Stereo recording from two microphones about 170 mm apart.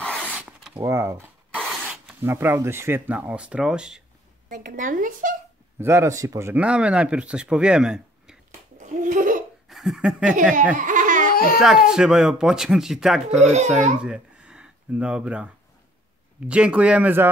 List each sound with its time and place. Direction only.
0.0 s a sound: 5° left (ahead or behind)
0.4 s a sound: 5° right (ahead or behind)
2.2 s speech: 15° right (ahead or behind)
4.7 s speech: 50° right (ahead or behind)
5.8 s speech: 15° right (ahead or behind)
8.7 s babbling: 50° right (ahead or behind)
9.7 s laughter: centre (ahead or behind)
10.8 s laughter: 50° right (ahead or behind)
11.3 s a child's voice: 60° left (ahead or behind)
11.9 s speech: 5° right (ahead or behind)
13.4 s speech: 40° right (ahead or behind)
14.0 s speech: 5° right (ahead or behind)